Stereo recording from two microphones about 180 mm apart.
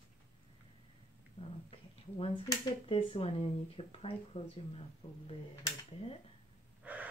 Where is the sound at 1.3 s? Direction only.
30° left (ahead or behind).